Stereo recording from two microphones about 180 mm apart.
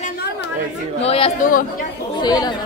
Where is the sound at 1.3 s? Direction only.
50° left (ahead or behind).